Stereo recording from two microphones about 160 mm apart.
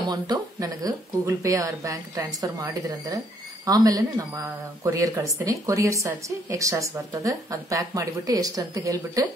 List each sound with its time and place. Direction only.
0.0 s a woman's voice: 25° right (ahead or behind)